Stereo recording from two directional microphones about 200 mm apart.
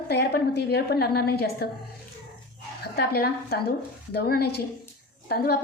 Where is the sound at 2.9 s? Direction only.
50° left (ahead or behind).